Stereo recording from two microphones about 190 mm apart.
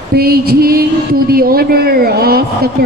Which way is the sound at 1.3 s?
50° right (ahead or behind).